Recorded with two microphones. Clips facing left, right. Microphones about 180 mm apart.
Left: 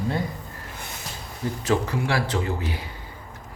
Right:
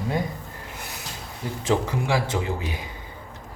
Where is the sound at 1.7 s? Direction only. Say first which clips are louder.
Right 1 dB; 15° right (ahead or behind).